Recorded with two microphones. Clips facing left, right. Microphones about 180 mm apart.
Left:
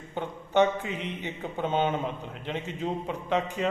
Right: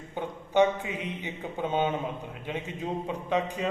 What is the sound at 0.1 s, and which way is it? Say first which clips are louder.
Speech: left 1 dB; 10° right (ahead or behind).